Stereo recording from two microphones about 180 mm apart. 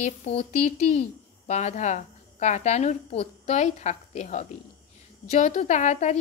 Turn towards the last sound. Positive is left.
turn(degrees=40)  # may be behind; listen again after turning